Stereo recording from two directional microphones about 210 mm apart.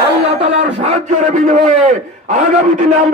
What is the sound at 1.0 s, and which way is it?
A man's voice, 35° right (ahead or behind).